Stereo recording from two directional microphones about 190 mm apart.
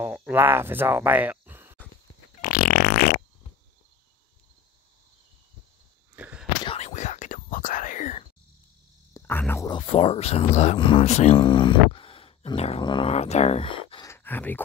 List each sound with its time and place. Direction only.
0.0 s speech: 5° right (ahead or behind)
2.4 s fart: 45° left (ahead or behind)
6.1 s a sound: 10° right (ahead or behind)
6.6 s whispering: 30° left (ahead or behind)
9.1 s speech: 10° left (ahead or behind)
9.7 s speech: 25° left (ahead or behind)
14.0 s a sound: 10° left (ahead or behind)